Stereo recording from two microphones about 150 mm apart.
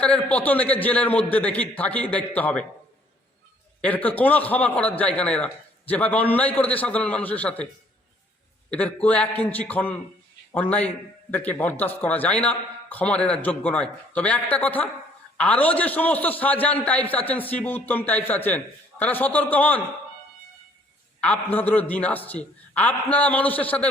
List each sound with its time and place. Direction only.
0.0 s a man's voice: 10° left (ahead or behind)
3.8 s a man's voice: 10° left (ahead or behind)
8.7 s a man's voice: 10° left (ahead or behind)
21.2 s a man's voice: 10° left (ahead or behind)